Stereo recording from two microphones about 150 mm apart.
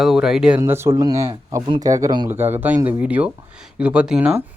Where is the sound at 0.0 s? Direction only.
Centre (ahead or behind).